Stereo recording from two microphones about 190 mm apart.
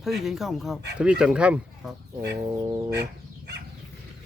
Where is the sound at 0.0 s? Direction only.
Centre (ahead or behind).